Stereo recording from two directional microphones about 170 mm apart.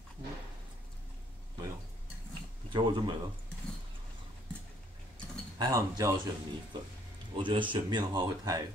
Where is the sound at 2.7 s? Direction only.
30° right (ahead or behind).